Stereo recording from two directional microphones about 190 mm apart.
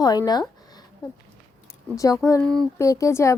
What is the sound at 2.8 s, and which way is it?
Speech, 15° left (ahead or behind).